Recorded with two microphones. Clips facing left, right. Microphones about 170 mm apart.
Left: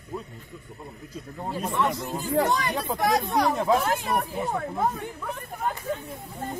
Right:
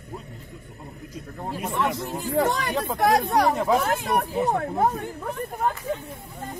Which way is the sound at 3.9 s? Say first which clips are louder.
Right 3 dB; 65° right (ahead or behind).